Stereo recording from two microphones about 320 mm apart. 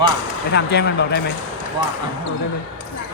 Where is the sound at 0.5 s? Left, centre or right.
Left.